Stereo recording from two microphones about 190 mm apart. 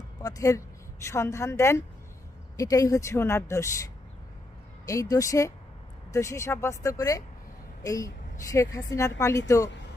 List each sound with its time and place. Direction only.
0.2 s a woman's voice: 20° left (ahead or behind)
4.9 s a woman's voice: 20° left (ahead or behind)